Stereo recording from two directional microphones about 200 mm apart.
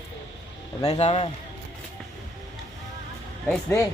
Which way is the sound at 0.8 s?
30° left (ahead or behind).